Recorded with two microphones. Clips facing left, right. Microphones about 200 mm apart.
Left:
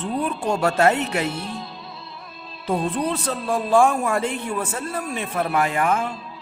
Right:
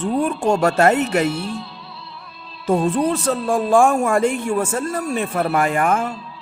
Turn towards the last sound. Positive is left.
turn(degrees=-50)  # may be behind; listen again after turning